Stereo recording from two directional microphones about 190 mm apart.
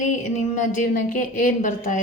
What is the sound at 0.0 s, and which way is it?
A woman's voice, 40° left (ahead or behind).